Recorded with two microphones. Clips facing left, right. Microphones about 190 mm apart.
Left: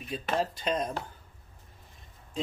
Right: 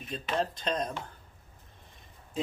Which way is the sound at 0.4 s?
5° left (ahead or behind).